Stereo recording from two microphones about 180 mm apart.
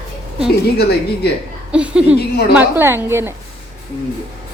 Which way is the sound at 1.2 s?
65° left (ahead or behind).